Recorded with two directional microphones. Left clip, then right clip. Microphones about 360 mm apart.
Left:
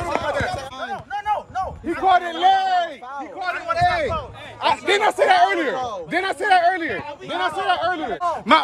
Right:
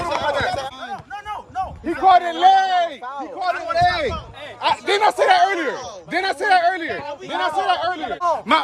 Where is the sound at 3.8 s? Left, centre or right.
Right.